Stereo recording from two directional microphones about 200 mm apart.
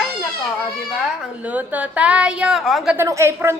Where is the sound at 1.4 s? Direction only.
5° right (ahead or behind).